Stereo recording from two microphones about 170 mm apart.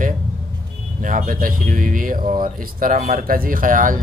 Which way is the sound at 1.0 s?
50° right (ahead or behind).